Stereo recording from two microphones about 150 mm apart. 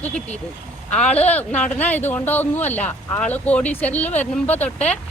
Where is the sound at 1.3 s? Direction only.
10° left (ahead or behind).